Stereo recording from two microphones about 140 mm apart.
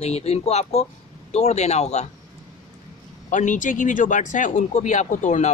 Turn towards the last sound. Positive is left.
turn(degrees=60)  # may be behind; listen again after turning